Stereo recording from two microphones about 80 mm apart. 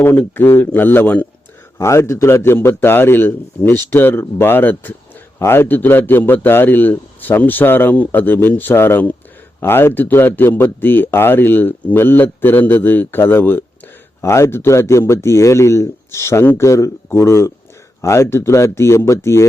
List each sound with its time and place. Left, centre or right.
0.0 s speech: left
1.8 s speech: left